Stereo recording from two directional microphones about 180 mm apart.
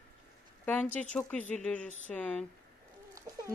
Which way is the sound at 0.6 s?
5° left (ahead or behind).